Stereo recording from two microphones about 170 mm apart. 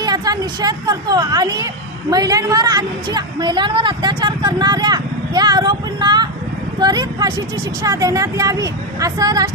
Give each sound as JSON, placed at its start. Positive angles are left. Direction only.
{"t": 0.0, "sound": "a woman's voice", "side_deg": -25}